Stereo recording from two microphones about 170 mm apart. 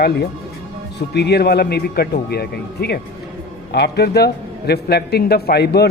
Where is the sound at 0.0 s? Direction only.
75° left (ahead or behind).